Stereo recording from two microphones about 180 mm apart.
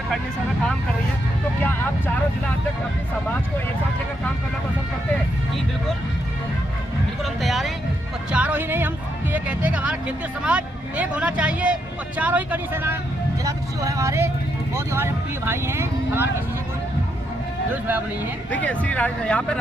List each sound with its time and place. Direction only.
1.6 s speech: 10° left (ahead or behind)
7.4 s speech: centre (ahead or behind)
18.5 s speech: 5° left (ahead or behind)